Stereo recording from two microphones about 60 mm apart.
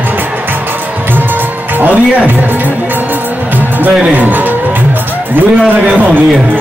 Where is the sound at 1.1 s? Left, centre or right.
Right.